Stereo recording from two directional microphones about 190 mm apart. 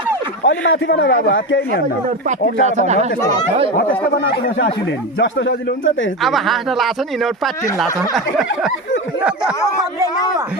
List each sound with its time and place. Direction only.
0.4 s a man's voice: 65° left (ahead or behind)
2.2 s speech: 40° right (ahead or behind)
3.8 s speech: 50° left (ahead or behind)
5.2 s a man's voice: 75° left (ahead or behind)
6.2 s speech: centre (ahead or behind)
9.2 s a sound: 5° right (ahead or behind)